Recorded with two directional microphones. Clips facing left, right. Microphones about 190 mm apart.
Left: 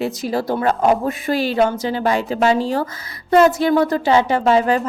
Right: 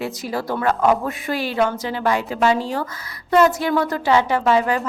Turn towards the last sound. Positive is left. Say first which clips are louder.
# left 3 dB
turn(degrees=30)  # may be behind; listen again after turning